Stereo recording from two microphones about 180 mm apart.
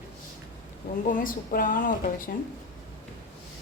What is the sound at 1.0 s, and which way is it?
Speech, 50° left (ahead or behind).